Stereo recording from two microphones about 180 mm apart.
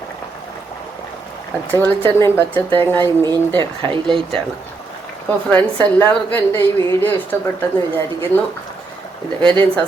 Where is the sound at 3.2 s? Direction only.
25° right (ahead or behind).